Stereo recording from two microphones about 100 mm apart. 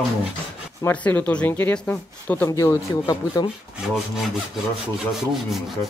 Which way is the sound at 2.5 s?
35° left (ahead or behind).